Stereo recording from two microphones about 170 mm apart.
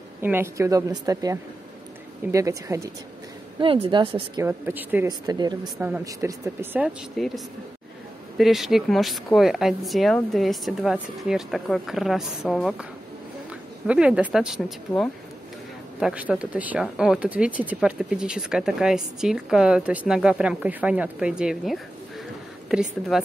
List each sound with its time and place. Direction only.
0.2 s speech: 15° right (ahead or behind)
3.5 s speech: 30° right (ahead or behind)
4.4 s speech: 15° right (ahead or behind)
5.0 s speech: 25° right (ahead or behind)
5.6 s speech: 5° right (ahead or behind)
6.0 s speech: 20° right (ahead or behind); by 12.8 s 5° right (ahead or behind)
13.8 s speech: 5° right (ahead or behind)